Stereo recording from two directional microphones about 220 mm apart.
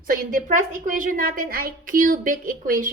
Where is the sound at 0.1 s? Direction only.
40° right (ahead or behind).